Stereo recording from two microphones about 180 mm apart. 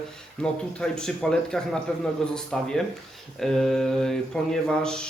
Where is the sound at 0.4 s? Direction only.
5° left (ahead or behind).